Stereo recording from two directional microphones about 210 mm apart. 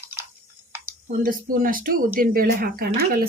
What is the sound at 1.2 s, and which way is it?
A woman's voice, 40° right (ahead or behind).